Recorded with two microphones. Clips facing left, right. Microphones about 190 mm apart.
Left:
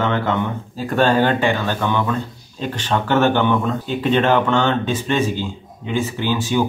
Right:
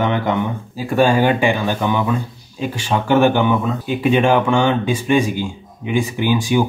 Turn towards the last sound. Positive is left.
turn(degrees=-15)  # may be behind; listen again after turning